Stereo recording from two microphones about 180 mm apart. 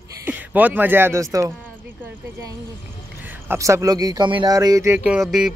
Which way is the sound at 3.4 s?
15° right (ahead or behind).